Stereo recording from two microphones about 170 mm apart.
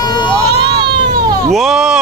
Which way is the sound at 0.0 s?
25° left (ahead or behind).